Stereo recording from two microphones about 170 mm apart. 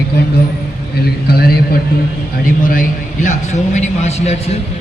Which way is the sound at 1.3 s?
65° left (ahead or behind).